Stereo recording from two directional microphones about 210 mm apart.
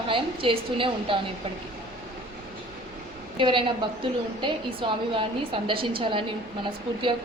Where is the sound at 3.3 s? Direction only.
20° right (ahead or behind).